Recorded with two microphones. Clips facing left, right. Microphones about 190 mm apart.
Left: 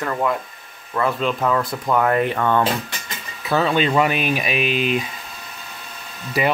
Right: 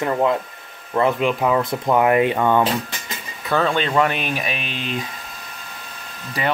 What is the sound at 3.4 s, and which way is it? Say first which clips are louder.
Speech: left 1 dB; 5° left (ahead or behind).